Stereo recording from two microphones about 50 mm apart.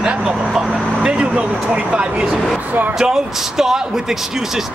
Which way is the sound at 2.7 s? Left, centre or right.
Right.